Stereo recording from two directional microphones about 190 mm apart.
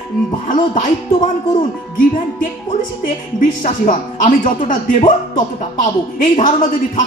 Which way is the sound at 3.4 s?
45° left (ahead or behind).